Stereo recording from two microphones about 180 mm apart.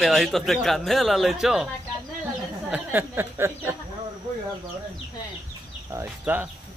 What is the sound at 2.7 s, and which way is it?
Speech, 10° right (ahead or behind).